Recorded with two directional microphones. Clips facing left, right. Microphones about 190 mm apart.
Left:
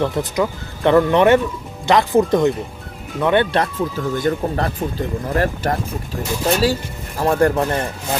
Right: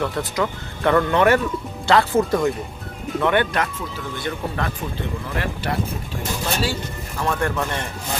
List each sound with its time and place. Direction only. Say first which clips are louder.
0.0 s speech: left 4 dB; 20° left (ahead or behind)
3.5 s speech: left 6 dB; 40° left (ahead or behind)